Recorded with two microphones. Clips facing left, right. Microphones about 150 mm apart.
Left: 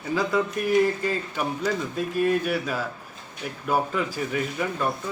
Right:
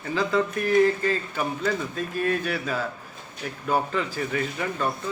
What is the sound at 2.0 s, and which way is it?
Speech, 5° left (ahead or behind).